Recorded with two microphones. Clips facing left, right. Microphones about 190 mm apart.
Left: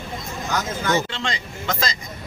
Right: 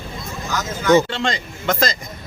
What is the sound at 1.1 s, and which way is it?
Speech, 50° right (ahead or behind).